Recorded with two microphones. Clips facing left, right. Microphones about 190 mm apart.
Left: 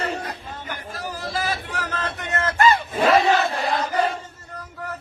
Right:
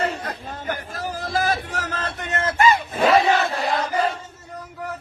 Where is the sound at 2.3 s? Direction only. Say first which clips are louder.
Right 1 dB; 20° right (ahead or behind).